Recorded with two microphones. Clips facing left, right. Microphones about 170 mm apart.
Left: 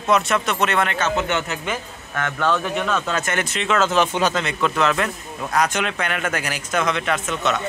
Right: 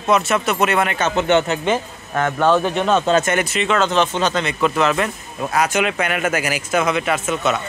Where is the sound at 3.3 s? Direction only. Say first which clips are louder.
Right 3 dB; 10° right (ahead or behind).